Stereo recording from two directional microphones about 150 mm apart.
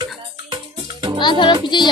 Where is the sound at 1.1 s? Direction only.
30° left (ahead or behind).